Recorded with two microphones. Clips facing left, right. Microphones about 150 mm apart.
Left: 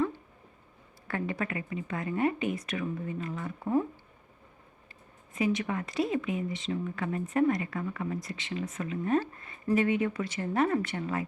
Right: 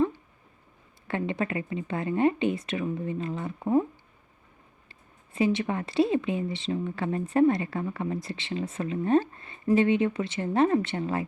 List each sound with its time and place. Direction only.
1.0 s speech: 25° right (ahead or behind)
5.3 s speech: 30° right (ahead or behind)